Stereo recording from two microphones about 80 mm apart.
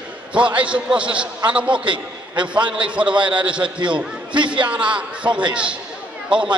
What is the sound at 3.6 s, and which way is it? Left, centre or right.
Speech, right.